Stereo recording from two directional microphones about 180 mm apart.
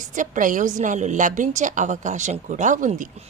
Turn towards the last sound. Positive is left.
turn(degrees=-45)  # may be behind; listen again after turning